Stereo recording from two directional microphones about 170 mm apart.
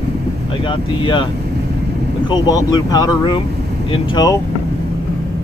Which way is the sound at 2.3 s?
25° left (ahead or behind).